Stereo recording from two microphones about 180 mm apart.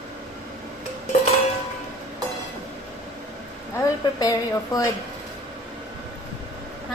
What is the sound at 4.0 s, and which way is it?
Speech, 20° left (ahead or behind).